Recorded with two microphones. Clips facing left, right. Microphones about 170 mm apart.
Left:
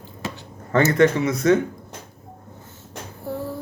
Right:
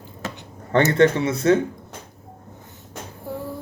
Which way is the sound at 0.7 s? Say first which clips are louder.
Even; 30° right (ahead or behind).